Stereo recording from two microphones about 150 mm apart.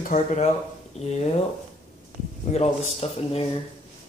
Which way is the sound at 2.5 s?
50° left (ahead or behind).